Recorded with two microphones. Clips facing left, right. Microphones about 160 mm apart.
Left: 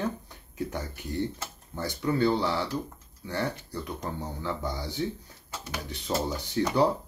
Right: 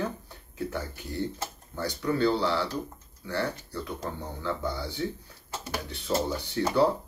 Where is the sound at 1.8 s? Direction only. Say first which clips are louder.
Even; 20° left (ahead or behind).